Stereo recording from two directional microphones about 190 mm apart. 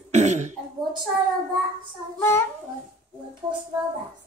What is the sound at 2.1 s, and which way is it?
Speech, 15° left (ahead or behind).